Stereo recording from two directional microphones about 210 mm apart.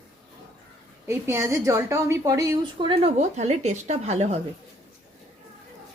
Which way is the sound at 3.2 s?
35° right (ahead or behind).